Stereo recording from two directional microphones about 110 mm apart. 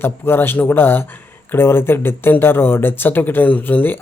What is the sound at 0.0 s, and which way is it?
Speech, 20° left (ahead or behind).